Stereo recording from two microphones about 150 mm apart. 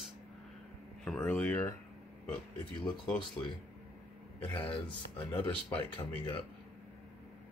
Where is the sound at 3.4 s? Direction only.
10° left (ahead or behind).